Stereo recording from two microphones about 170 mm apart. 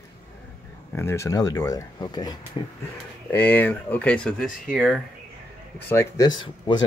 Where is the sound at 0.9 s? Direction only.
15° left (ahead or behind).